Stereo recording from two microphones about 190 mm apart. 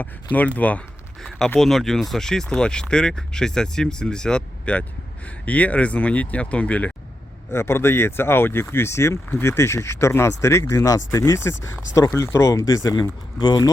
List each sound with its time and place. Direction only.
0.0 s speech: 10° left (ahead or behind)